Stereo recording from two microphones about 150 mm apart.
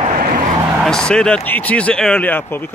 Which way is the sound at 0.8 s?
5° left (ahead or behind).